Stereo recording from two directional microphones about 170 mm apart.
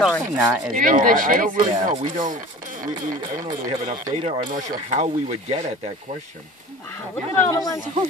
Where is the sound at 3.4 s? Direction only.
50° right (ahead or behind).